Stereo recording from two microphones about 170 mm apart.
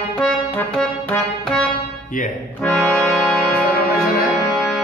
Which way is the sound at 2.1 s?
50° left (ahead or behind).